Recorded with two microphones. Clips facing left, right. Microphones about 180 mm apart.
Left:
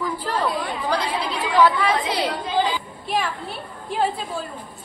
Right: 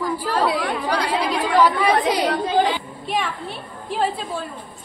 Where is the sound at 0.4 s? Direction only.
75° right (ahead or behind).